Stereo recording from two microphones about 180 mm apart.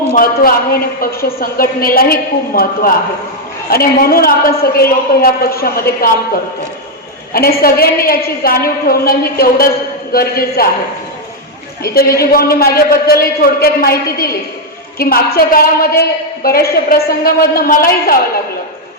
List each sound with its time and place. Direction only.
0.1 s a woman's voice: 55° left (ahead or behind)
12.2 s a woman's voice: 55° left (ahead or behind)